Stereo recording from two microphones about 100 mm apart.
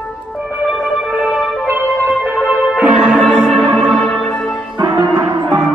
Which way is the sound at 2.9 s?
Centre (ahead or behind).